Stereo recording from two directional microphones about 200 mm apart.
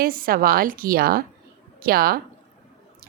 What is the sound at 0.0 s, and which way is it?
A woman's voice, 45° right (ahead or behind).